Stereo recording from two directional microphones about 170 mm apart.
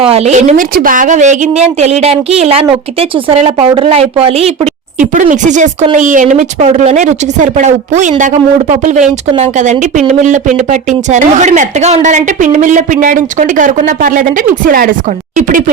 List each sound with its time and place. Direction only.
0.0 s a woman's voice: 35° right (ahead or behind)